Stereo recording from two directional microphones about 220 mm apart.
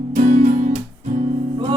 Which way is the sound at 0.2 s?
35° right (ahead or behind).